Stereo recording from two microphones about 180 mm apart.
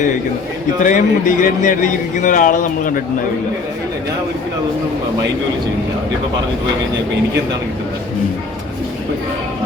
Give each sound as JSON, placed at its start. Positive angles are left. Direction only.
{"t": 0.8, "sound": "a man's voice", "side_deg": 45}